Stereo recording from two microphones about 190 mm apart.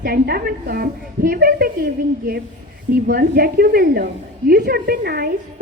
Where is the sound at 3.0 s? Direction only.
55° right (ahead or behind).